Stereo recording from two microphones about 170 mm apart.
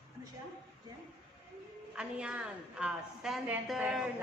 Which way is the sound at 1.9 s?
5° right (ahead or behind).